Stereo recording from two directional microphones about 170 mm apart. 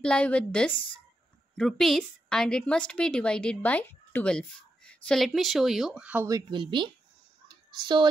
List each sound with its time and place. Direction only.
0.0 s a woman's voice: 5° left (ahead or behind)
6.2 s speech: 25° right (ahead or behind)
7.4 s whispering: 25° right (ahead or behind)